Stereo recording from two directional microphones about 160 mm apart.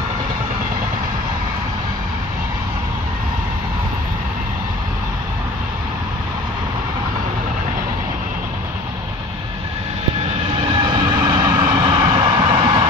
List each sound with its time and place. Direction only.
10.6 s train: 35° right (ahead or behind)
11.6 s vehicle: 30° right (ahead or behind)